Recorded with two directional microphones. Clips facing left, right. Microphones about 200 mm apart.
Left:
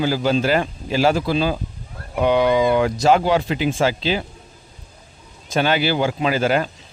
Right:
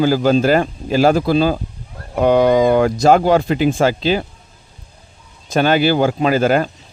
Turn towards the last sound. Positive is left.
turn(degrees=-45)  # may be behind; listen again after turning